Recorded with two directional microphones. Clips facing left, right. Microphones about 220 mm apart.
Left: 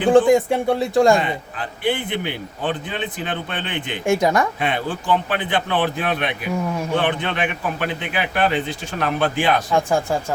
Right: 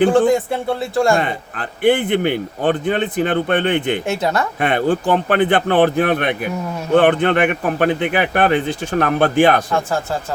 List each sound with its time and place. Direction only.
0.1 s a man's voice: 15° left (ahead or behind)
1.5 s speech: 50° right (ahead or behind)
4.0 s a man's voice: 15° left (ahead or behind)
4.6 s speech: 55° right (ahead or behind)
9.7 s a man's voice: 15° left (ahead or behind)